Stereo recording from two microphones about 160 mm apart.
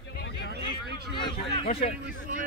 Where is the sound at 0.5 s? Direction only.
90° right.